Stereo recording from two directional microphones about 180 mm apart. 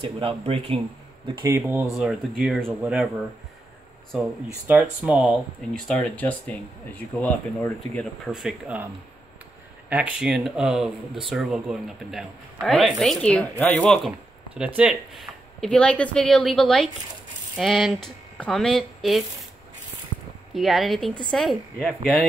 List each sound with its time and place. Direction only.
0.2 s speech: 30° right (ahead or behind)
1.2 s speech: 15° right (ahead or behind)
2.0 s speech: 5° right (ahead or behind)
4.6 s speech: 5° right (ahead or behind)
8.3 s speech: 5° right (ahead or behind)
9.8 s speech: 5° right (ahead or behind)
20.5 s speech: centre (ahead or behind)